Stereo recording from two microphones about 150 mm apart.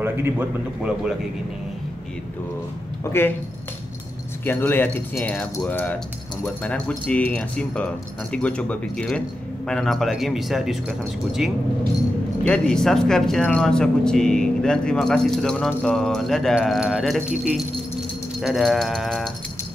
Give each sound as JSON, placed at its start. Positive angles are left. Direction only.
{"t": 0.0, "sound": "speech", "side_deg": -15}
{"t": 3.1, "sound": "speech", "side_deg": 15}
{"t": 4.5, "sound": "speech", "side_deg": 15}
{"t": 18.4, "sound": "speech", "side_deg": 0}